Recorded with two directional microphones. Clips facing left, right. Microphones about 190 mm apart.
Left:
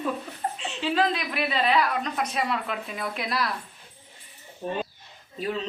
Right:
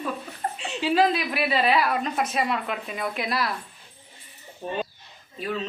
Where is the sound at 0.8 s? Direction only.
10° right (ahead or behind).